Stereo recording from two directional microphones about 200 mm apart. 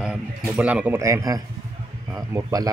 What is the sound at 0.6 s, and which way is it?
Speech, 5° right (ahead or behind).